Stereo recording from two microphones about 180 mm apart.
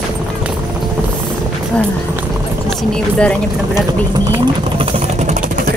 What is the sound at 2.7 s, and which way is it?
Speech, 5° left (ahead or behind).